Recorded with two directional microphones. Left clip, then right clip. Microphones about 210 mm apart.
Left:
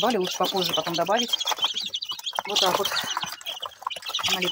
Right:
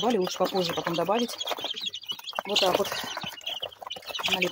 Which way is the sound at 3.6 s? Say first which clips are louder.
Left 4 dB; 10° left (ahead or behind).